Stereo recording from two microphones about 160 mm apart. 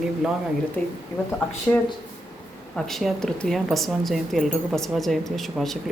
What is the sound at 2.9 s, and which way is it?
Speech, centre (ahead or behind).